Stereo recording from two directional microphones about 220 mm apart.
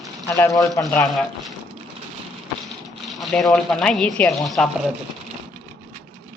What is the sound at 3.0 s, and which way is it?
Speech, centre (ahead or behind).